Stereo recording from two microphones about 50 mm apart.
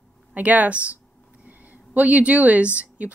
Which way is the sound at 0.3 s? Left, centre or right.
Right.